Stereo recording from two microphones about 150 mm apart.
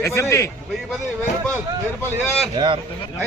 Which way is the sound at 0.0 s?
20° left (ahead or behind).